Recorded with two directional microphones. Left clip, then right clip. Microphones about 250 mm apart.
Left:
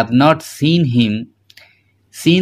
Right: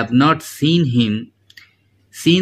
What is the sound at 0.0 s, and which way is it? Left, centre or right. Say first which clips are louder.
Speech: left 3 dB; centre.